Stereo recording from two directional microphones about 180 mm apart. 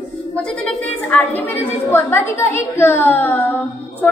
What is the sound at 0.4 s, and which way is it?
A woman's voice, 5° left (ahead or behind).